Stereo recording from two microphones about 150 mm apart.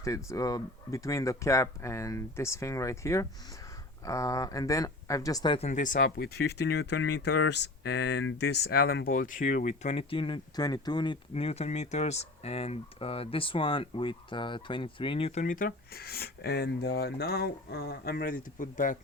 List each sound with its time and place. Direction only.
0.0 s speech: 20° left (ahead or behind)
5.5 s speech: 50° left (ahead or behind); by 6.8 s 90° left
8.5 s speech: 90° left; by 15.3 s 35° left (ahead or behind)
15.4 s speech: 65° left (ahead or behind)